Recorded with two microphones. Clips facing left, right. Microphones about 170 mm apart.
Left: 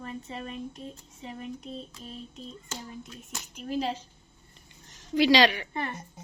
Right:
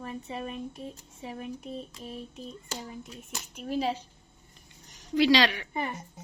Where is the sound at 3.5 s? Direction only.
5° right (ahead or behind).